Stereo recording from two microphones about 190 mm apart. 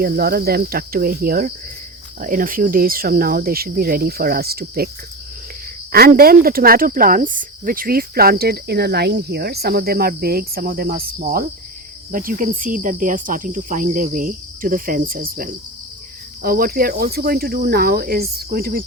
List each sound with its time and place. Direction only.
0.0 s speech: 55° right (ahead or behind)
5.9 s speech: 55° right (ahead or behind)